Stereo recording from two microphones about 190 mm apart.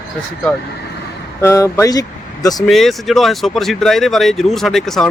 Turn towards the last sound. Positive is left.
turn(degrees=0)  # may be behind; listen again after turning